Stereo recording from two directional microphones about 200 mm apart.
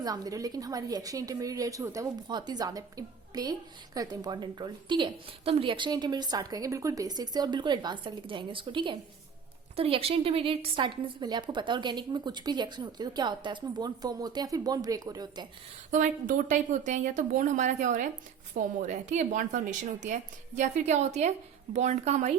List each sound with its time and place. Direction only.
0.0 s a woman's voice: 20° right (ahead or behind)
15.9 s a woman's voice: 40° right (ahead or behind)